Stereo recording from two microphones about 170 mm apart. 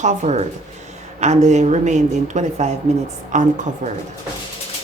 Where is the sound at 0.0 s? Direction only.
40° right (ahead or behind).